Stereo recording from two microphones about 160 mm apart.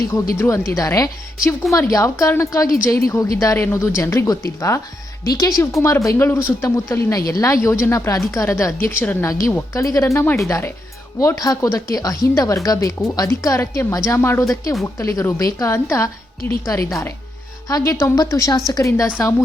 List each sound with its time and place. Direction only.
0.3 s a woman's voice: 15° left (ahead or behind)